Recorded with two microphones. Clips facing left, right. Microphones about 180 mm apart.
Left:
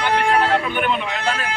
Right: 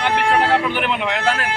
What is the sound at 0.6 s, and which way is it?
Speech, 80° right.